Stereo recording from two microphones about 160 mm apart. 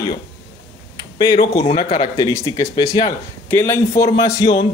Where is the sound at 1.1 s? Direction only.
25° left (ahead or behind).